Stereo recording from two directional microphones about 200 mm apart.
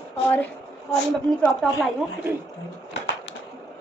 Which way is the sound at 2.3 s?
10° right (ahead or behind).